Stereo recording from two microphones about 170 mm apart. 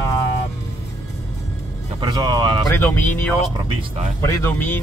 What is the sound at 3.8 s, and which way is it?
Speech, 40° right (ahead or behind).